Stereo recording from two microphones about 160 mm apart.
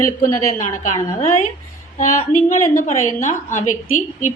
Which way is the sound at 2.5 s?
50° left (ahead or behind).